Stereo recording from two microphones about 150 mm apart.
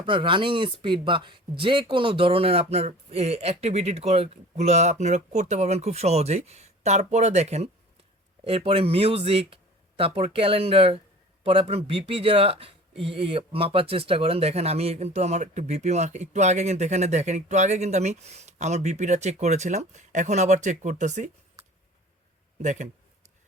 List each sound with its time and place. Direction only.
0.0 s speech: 35° right (ahead or behind); by 21.2 s 55° right (ahead or behind)
22.6 s speech: 55° right (ahead or behind)